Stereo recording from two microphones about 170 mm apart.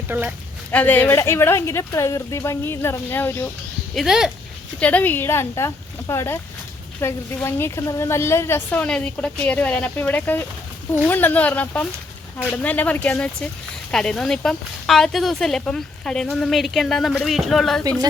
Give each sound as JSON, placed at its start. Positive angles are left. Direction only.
{"t": 0.1, "sound": "speech", "side_deg": -10}
{"t": 0.7, "sound": "a woman's voice", "side_deg": 10}
{"t": 3.9, "sound": "speech", "side_deg": 0}
{"t": 4.8, "sound": "a woman's voice", "side_deg": 10}